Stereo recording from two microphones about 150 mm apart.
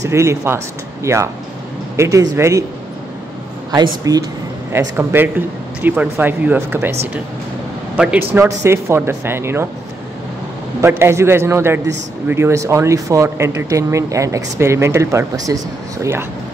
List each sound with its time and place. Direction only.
0.0 s speech: 20° right (ahead or behind)
3.7 s speech: 25° right (ahead or behind)
4.7 s a man's voice: 15° right (ahead or behind)
10.8 s a man's voice: 15° right (ahead or behind)